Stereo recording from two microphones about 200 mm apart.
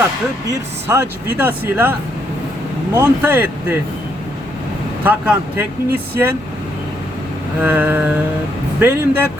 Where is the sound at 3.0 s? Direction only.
10° right (ahead or behind).